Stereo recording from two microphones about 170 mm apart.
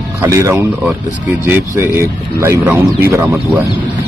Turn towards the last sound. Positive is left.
turn(degrees=-15)  # may be behind; listen again after turning